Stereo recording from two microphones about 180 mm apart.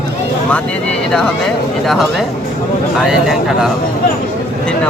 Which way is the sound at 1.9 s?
Centre (ahead or behind).